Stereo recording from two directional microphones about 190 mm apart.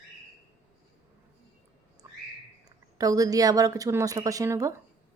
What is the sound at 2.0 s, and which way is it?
Squawk, 15° right (ahead or behind).